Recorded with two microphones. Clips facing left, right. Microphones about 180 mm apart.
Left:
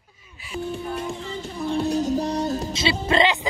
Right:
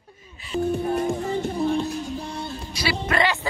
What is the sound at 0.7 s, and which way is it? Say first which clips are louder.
Music: right 6 dB; 50° right (ahead or behind).